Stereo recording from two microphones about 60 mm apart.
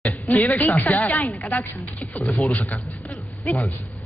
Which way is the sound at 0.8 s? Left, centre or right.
Left.